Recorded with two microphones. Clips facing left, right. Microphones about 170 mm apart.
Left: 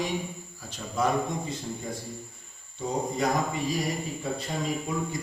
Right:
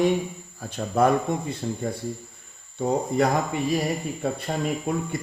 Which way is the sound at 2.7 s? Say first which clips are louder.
Right 6 dB; 60° right (ahead or behind).